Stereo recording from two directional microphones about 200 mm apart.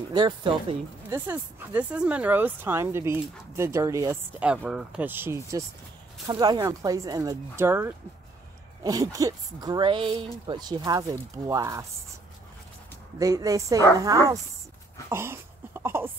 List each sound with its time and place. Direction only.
0.1 s a woman's voice: 25° right (ahead or behind)
1.1 s a woman's voice: 10° right (ahead or behind)
13.2 s speech: 15° right (ahead or behind)
15.0 s a sound: 10° right (ahead or behind)